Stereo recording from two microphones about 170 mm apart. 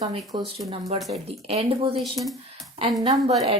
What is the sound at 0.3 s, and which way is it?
Speech, 30° right (ahead or behind).